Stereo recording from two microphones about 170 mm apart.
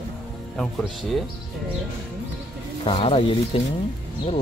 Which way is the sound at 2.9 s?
35° left (ahead or behind).